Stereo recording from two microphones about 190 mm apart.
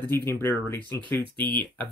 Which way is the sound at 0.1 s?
10° left (ahead or behind).